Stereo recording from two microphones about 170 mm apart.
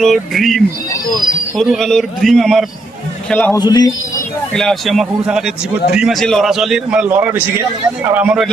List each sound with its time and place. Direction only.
0.0 s a man's voice: centre (ahead or behind)
3.6 s a man's voice: 25° left (ahead or behind)
4.5 s a man's voice: centre (ahead or behind)